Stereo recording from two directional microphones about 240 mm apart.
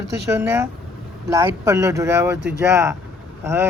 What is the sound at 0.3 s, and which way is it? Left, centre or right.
Speech, centre.